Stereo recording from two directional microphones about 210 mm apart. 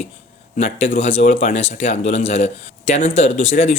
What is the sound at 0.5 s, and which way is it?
Speech, 35° left (ahead or behind).